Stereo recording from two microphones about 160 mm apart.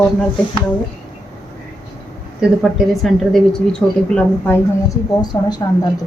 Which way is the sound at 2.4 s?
5° right (ahead or behind).